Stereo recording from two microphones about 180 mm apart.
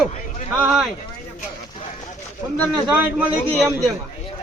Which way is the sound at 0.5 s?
5° right (ahead or behind).